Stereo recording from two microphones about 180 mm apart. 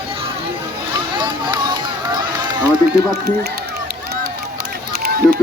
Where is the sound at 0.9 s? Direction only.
25° right (ahead or behind).